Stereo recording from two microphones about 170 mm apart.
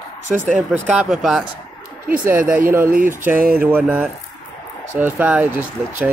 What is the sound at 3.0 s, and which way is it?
Speech, 10° right (ahead or behind).